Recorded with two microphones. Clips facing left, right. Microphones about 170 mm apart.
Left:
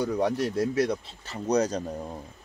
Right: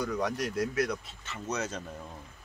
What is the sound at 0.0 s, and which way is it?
Speech, 25° left (ahead or behind).